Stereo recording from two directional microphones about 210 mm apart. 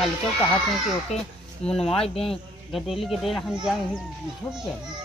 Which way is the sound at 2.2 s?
Centre (ahead or behind).